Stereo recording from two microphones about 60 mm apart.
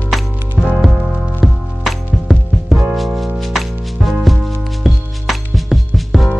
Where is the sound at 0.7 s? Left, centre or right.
Centre.